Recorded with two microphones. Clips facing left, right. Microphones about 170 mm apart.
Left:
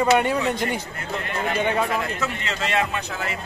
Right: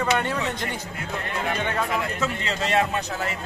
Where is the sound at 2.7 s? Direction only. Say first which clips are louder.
Right 2 dB; 35° right (ahead or behind).